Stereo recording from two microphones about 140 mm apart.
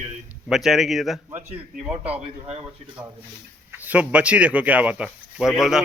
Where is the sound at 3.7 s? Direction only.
10° right (ahead or behind).